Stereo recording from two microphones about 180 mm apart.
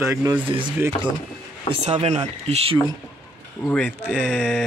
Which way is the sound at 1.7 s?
35° right (ahead or behind).